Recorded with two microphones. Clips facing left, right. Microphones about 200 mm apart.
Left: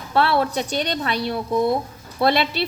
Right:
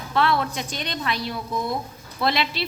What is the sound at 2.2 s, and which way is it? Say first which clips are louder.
Speech: left 5 dB; 60° left (ahead or behind).